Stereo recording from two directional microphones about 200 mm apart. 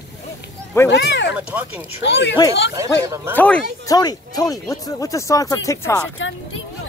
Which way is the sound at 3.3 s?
10° left (ahead or behind).